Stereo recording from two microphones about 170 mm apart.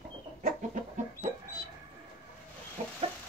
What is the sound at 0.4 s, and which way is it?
Chicken, 50° right (ahead or behind).